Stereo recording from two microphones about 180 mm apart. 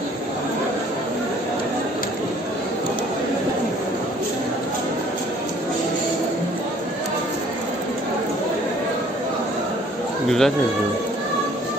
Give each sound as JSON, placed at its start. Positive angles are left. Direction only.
{"t": 10.2, "sound": "speech", "side_deg": 0}